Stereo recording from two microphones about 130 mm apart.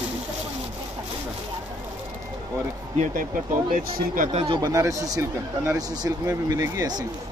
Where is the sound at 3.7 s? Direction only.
85° right.